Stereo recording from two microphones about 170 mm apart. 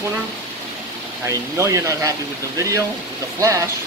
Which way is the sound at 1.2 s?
20° right (ahead or behind).